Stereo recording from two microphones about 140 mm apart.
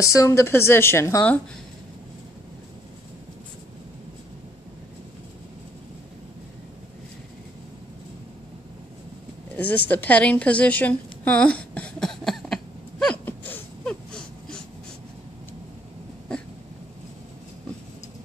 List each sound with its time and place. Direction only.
0.0 s a woman's voice: 25° left (ahead or behind)
9.6 s a woman's voice: 10° left (ahead or behind)
13.0 s a sound: 10° left (ahead or behind)